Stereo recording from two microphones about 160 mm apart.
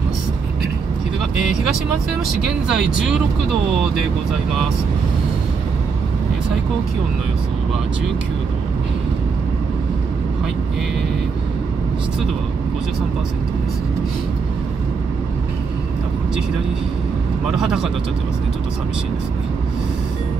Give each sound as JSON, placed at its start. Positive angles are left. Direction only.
{"t": 1.3, "sound": "speech", "side_deg": 50}
{"t": 2.7, "sound": "speech", "side_deg": -5}
{"t": 17.5, "sound": "speech", "side_deg": -5}